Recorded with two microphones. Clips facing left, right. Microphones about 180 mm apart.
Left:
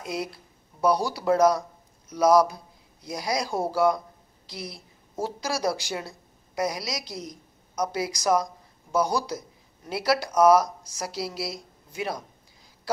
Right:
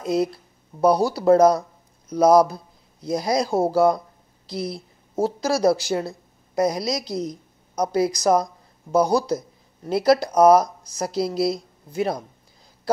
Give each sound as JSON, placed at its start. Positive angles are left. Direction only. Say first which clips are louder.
{"t": 0.0, "sound": "speech", "louder": "right 10 dB", "side_deg": -30}